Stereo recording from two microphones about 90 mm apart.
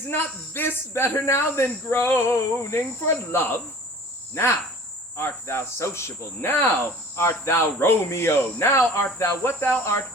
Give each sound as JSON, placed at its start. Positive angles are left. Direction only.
{"t": 0.1, "sound": "speech", "side_deg": 25}
{"t": 5.1, "sound": "speech", "side_deg": 30}